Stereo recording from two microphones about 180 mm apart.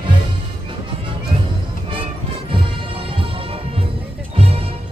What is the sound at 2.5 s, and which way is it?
Music, 30° right (ahead or behind).